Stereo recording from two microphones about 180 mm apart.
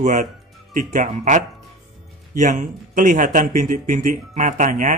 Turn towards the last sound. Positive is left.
turn(degrees=-45)  # may be behind; listen again after turning